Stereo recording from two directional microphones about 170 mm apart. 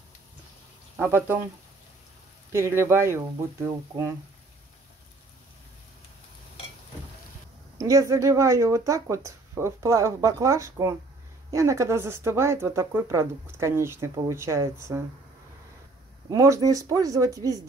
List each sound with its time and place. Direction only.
0.9 s speech: 15° right (ahead or behind)
2.5 s speech: 15° right (ahead or behind)
7.7 s speech: 20° right (ahead or behind)
16.3 s speech: 20° right (ahead or behind)